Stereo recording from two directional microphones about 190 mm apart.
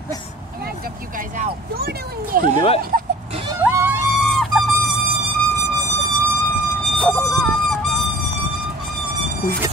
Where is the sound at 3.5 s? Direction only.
15° right (ahead or behind).